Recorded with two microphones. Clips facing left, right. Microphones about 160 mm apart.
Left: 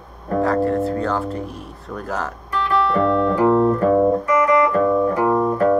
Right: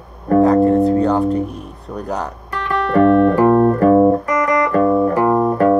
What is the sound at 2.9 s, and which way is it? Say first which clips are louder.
Music: right 11 dB; 60° right (ahead or behind).